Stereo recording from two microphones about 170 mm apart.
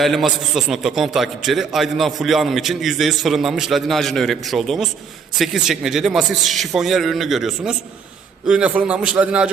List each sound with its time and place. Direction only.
0.0 s a man's voice: centre (ahead or behind)